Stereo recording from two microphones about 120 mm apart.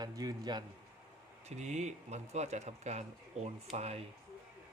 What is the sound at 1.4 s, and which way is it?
Speech, 70° right (ahead or behind).